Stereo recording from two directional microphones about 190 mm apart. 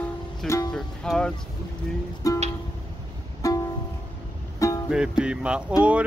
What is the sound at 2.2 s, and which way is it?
Music, 15° left (ahead or behind).